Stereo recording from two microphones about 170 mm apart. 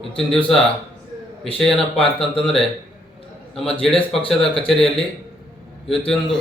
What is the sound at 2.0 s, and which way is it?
Speech, 30° left (ahead or behind).